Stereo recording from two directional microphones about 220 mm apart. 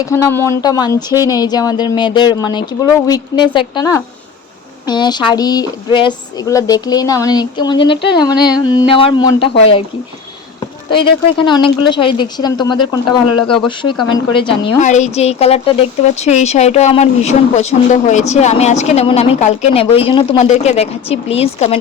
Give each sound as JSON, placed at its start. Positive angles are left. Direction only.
{"t": 0.0, "sound": "speech", "side_deg": 10}
{"t": 10.9, "sound": "speech", "side_deg": 20}